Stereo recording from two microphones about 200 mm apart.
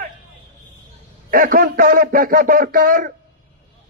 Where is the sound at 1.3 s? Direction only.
45° right (ahead or behind).